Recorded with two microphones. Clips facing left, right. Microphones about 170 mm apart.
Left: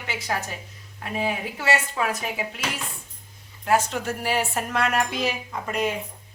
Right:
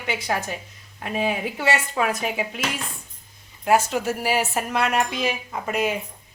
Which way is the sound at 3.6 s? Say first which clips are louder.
Right 3 dB; 10° right (ahead or behind).